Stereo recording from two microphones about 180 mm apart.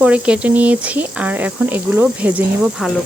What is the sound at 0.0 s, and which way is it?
Speech, 5° right (ahead or behind).